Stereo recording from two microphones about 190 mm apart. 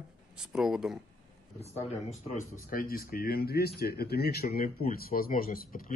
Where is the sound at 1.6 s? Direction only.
35° left (ahead or behind).